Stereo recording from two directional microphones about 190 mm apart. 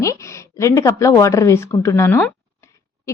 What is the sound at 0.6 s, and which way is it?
A woman's voice, 15° left (ahead or behind).